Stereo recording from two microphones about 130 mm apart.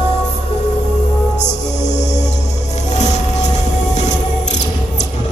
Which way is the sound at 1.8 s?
65° left (ahead or behind).